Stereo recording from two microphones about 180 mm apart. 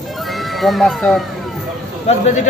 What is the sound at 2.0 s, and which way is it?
Speech, 40° left (ahead or behind).